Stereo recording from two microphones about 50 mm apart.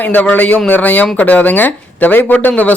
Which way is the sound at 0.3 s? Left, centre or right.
Left.